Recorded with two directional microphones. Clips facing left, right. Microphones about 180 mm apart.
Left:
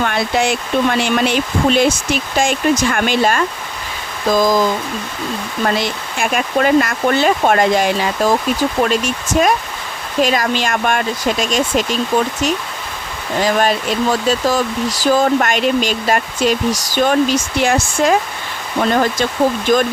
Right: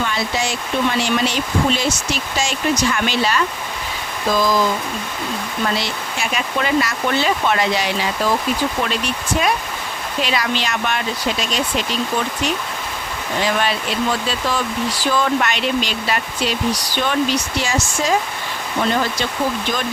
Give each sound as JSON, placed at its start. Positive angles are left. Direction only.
{"t": 0.0, "sound": "speech", "side_deg": 55}
{"t": 5.6, "sound": "speech", "side_deg": 50}
{"t": 13.4, "sound": "speech", "side_deg": 45}
{"t": 19.7, "sound": "speech", "side_deg": 45}